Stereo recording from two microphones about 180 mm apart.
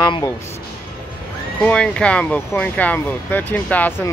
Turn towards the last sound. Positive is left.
turn(degrees=10)  # may be behind; listen again after turning